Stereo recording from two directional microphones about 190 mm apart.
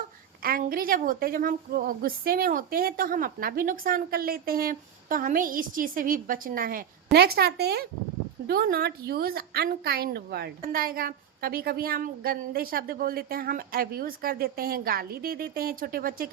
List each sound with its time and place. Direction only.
0.4 s a woman's voice: 50° right (ahead or behind)